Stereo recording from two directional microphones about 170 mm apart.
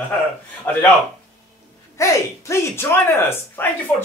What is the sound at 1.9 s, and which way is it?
Speech, 15° left (ahead or behind).